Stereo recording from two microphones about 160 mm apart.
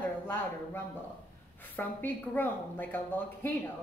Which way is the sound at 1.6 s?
10° left (ahead or behind).